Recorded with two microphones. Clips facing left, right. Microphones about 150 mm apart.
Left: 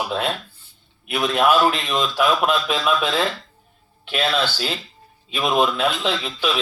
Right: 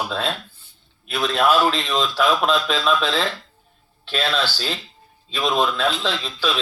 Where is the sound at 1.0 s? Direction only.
15° left (ahead or behind).